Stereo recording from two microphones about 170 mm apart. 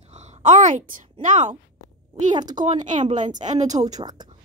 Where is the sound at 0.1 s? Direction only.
40° right (ahead or behind).